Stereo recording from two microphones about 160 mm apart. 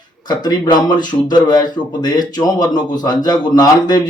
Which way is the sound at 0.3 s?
25° left (ahead or behind).